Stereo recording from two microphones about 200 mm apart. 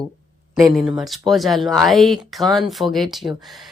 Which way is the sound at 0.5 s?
Centre (ahead or behind).